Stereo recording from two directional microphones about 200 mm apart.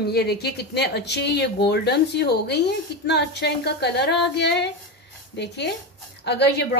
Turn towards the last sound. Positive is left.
turn(degrees=55)  # may be behind; listen again after turning